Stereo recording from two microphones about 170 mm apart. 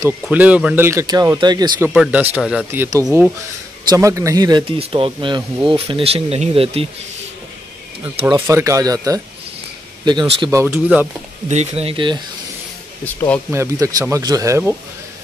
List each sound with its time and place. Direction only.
0.2 s speech: 10° right (ahead or behind)
0.8 s speech: 20° right (ahead or behind)
2.0 s speech: 10° right (ahead or behind)
3.1 s speech: centre (ahead or behind)
3.9 s speech: 15° right (ahead or behind); by 6.9 s 35° right (ahead or behind)
8.4 s speech: 15° right (ahead or behind)
10.6 s speech: 10° right (ahead or behind)
11.4 s speech: 40° right (ahead or behind)
13.0 s speech: 10° left (ahead or behind)
13.5 s speech: 15° right (ahead or behind)